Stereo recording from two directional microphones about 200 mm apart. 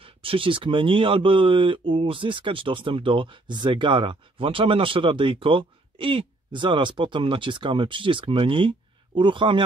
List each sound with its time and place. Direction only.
0.0 s speech: 25° right (ahead or behind)